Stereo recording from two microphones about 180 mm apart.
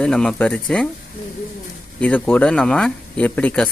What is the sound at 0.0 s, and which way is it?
Speech, 5° left (ahead or behind).